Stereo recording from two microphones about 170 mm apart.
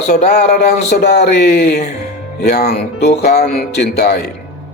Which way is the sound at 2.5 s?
70° left (ahead or behind).